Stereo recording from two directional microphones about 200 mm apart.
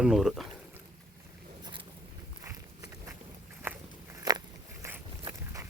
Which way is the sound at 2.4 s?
15° right (ahead or behind).